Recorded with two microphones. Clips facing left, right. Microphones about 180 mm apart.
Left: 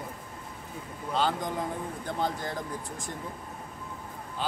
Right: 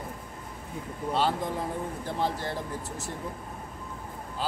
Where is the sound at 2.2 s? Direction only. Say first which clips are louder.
Right 2 dB; 30° right (ahead or behind).